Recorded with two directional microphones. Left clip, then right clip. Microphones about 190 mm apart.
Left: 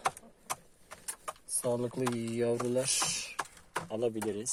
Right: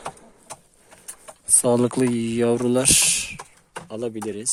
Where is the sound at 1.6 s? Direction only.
50° right (ahead or behind).